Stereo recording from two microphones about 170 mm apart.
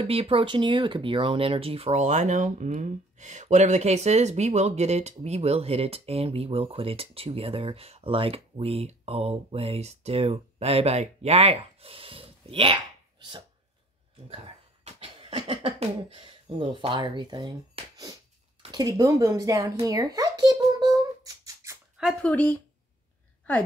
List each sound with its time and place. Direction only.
0.0 s speech: 35° right (ahead or behind)
14.3 s speech: 35° right (ahead or behind)
17.8 s a sound: 35° right (ahead or behind)
18.6 s a sound: 25° right (ahead or behind)
21.9 s speech: centre (ahead or behind)
22.3 s speech: 10° left (ahead or behind)